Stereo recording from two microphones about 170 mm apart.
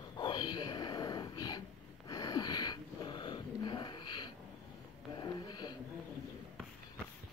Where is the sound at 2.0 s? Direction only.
25° left (ahead or behind).